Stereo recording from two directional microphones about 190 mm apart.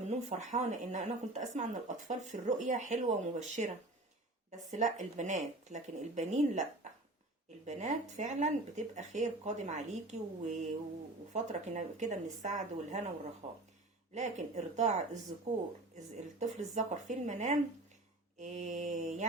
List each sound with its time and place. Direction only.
0.1 s a woman's voice: 40° right (ahead or behind)
4.7 s a woman's voice: 40° right (ahead or behind)
14.1 s a woman's voice: 40° right (ahead or behind)